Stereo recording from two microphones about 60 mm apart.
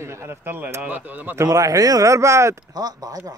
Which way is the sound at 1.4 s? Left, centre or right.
Right.